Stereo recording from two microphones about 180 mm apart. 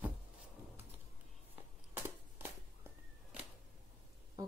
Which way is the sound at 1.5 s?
10° right (ahead or behind).